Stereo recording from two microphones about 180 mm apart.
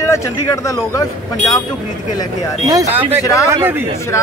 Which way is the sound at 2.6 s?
20° right (ahead or behind).